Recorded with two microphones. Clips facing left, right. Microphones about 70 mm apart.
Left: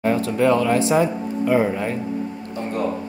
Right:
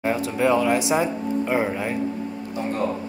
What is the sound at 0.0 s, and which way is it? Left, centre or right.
Speech, centre.